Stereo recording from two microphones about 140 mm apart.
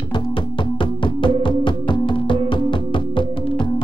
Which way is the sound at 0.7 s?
35° left (ahead or behind).